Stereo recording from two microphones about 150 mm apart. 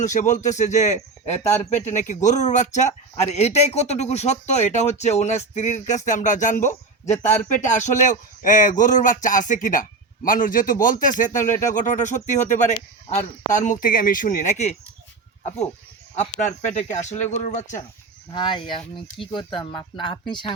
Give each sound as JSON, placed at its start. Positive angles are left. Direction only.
{"t": 0.0, "sound": "speech", "side_deg": 55}
{"t": 16.7, "sound": "speech", "side_deg": 50}
{"t": 18.3, "sound": "speech", "side_deg": 30}